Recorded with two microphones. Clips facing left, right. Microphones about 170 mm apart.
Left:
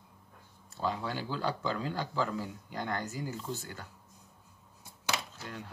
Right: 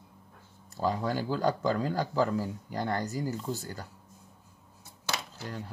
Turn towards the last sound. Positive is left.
turn(degrees=-35)  # may be behind; listen again after turning